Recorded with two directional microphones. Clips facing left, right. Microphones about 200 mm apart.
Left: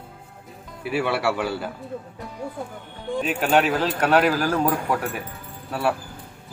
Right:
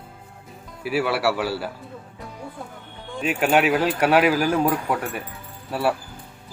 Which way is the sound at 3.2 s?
10° right (ahead or behind).